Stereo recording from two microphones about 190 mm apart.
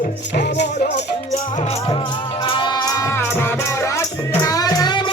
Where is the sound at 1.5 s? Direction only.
30° left (ahead or behind).